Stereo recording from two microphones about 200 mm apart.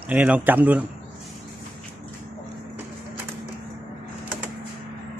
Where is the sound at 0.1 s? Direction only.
5° right (ahead or behind).